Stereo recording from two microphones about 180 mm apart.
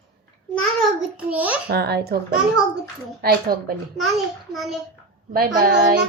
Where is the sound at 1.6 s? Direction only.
65° right (ahead or behind).